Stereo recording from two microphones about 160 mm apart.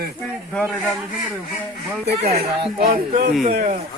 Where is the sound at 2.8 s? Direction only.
65° right (ahead or behind).